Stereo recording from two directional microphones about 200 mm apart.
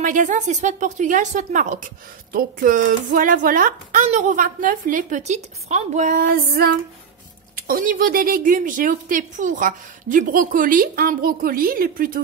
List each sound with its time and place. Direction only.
0.0 s a woman's voice: 40° right (ahead or behind)